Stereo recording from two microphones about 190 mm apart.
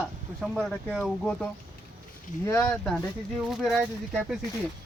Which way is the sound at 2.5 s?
10° left (ahead or behind).